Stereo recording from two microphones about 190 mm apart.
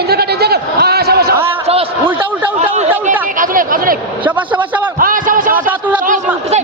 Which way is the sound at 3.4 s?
45° right (ahead or behind).